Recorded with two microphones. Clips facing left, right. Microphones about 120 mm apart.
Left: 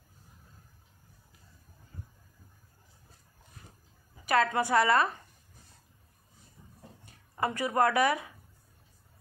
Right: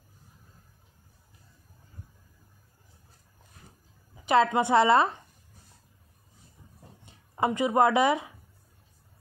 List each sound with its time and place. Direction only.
4.3 s a woman's voice: 25° right (ahead or behind)
7.1 s speech: 20° right (ahead or behind)